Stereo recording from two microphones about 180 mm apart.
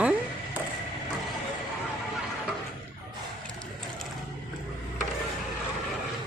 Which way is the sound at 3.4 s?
5° left (ahead or behind).